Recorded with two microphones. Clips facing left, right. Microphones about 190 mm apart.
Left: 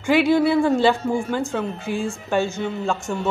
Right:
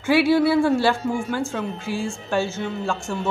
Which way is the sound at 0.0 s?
15° left (ahead or behind).